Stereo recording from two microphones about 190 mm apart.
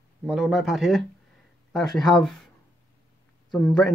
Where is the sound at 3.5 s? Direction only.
5° left (ahead or behind).